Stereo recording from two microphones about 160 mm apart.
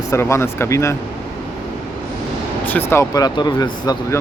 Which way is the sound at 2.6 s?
10° left (ahead or behind).